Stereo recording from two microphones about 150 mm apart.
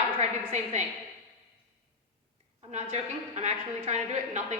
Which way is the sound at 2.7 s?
50° right (ahead or behind).